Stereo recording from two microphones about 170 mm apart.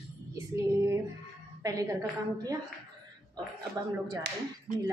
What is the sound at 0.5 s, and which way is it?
A woman's voice, 15° right (ahead or behind).